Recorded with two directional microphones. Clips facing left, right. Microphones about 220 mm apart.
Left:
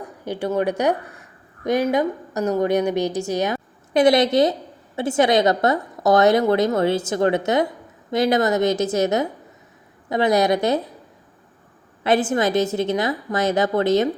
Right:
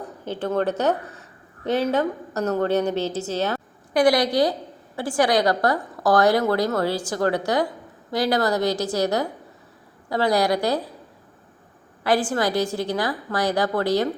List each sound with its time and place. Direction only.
0.0 s a woman's voice: 10° left (ahead or behind)
12.0 s a woman's voice: 20° left (ahead or behind)